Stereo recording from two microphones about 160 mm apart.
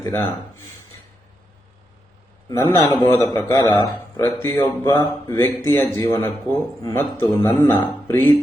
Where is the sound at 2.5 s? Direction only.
20° left (ahead or behind).